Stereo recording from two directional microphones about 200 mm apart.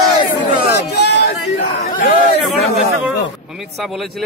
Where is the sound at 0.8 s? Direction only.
55° left (ahead or behind).